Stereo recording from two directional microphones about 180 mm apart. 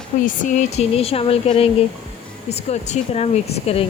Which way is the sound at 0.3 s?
45° left (ahead or behind).